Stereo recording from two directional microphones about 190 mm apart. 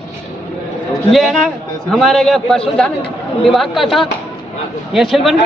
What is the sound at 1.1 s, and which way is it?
Speech, centre (ahead or behind).